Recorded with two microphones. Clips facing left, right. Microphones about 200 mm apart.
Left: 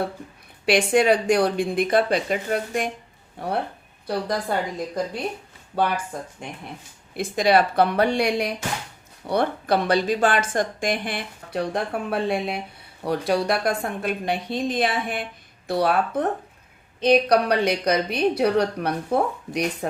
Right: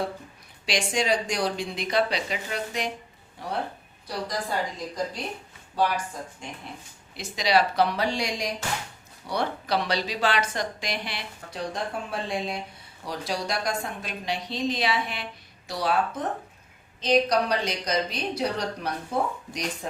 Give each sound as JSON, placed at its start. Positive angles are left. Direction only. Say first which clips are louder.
{"t": 0.6, "sound": "a woman's voice", "louder": "left 9 dB", "side_deg": 60}
{"t": 4.0, "sound": "a woman's voice", "louder": "left 6 dB", "side_deg": 60}